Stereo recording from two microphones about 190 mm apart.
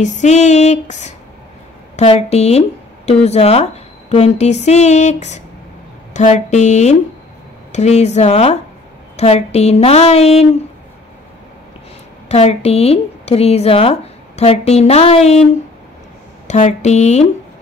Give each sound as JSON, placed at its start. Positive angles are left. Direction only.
{"t": 0.0, "sound": "speech", "side_deg": 40}
{"t": 12.3, "sound": "speech", "side_deg": 35}
{"t": 16.4, "sound": "speech", "side_deg": 40}